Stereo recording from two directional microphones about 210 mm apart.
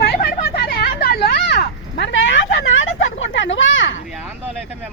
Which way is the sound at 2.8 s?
65° left (ahead or behind).